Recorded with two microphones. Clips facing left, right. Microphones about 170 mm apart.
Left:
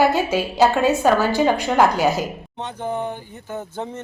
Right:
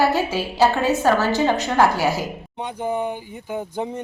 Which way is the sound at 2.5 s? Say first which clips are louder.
Right 4 dB; 10° right (ahead or behind).